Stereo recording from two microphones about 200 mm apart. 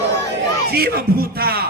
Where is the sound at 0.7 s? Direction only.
50° right (ahead or behind).